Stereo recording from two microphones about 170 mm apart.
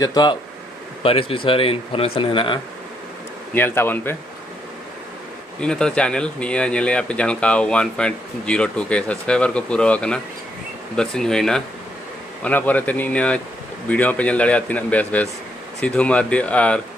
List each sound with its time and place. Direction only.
0.0 s speech: 25° left (ahead or behind)
3.5 s speech: 10° left (ahead or behind)
5.6 s speech: 5° left (ahead or behind)